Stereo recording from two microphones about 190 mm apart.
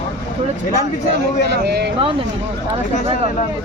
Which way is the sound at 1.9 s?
25° right (ahead or behind).